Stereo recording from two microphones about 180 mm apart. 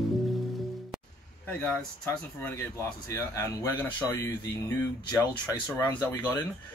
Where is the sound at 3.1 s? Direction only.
15° left (ahead or behind).